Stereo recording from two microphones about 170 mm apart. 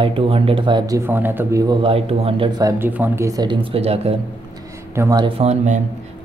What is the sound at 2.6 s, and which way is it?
Speech, 15° right (ahead or behind).